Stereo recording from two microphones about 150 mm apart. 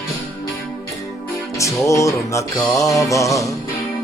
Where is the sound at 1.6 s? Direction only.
20° left (ahead or behind).